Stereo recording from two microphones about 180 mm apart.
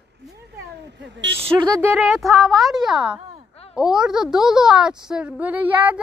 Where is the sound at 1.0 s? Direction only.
75° right (ahead or behind).